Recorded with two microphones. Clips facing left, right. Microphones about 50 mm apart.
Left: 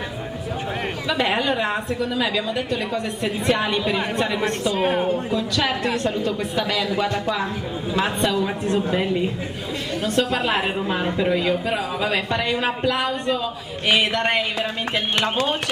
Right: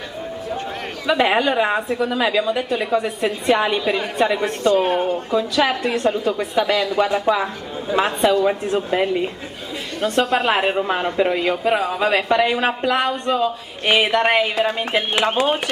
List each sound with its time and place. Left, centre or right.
1.0 s a woman's voice: centre
10.8 s a woman's voice: centre